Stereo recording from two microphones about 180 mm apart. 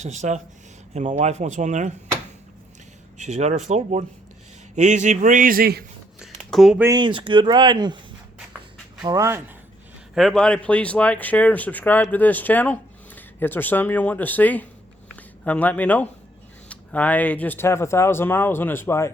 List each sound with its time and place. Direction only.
0.0 s speech: 40° right (ahead or behind)
3.2 s a man's voice: 40° right (ahead or behind); by 5.8 s 55° right (ahead or behind)
6.1 s a sound: centre (ahead or behind)
6.8 s speech: 25° right (ahead or behind)
9.0 s speech: 15° right (ahead or behind)
10.2 s speech: centre (ahead or behind)